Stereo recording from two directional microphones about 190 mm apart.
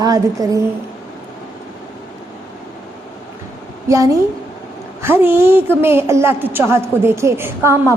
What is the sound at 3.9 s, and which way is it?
A woman's voice, 15° right (ahead or behind).